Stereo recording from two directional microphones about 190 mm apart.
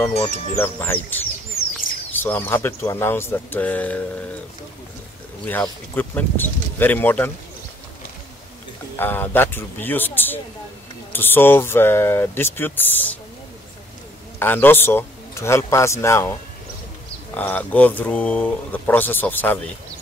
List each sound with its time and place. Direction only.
0.6 s speech: 10° left (ahead or behind)
5.4 s speech: 10° left (ahead or behind)
8.9 s speech: 10° left (ahead or behind)
14.4 s speech: 10° left (ahead or behind)